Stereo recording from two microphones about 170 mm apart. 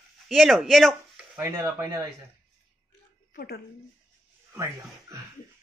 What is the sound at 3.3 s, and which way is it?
Speech, 70° left (ahead or behind).